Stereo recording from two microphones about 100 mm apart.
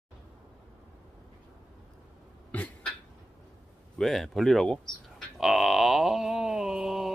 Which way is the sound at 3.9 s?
Centre (ahead or behind).